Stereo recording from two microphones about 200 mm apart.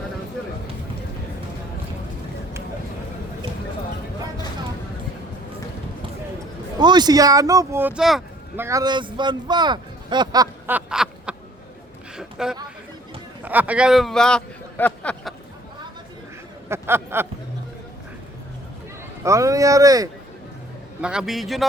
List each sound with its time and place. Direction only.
6.7 s speech: 20° right (ahead or behind); by 8.6 s centre (ahead or behind)
8.6 s a man's voice: 20° right (ahead or behind)
10.8 s a sound: 5° right (ahead or behind)
13.4 s a man's voice: 10° right (ahead or behind)
16.6 s speech: 10° right (ahead or behind)
19.2 s speech: 15° right (ahead or behind)
21.0 s a man's voice: 5° right (ahead or behind)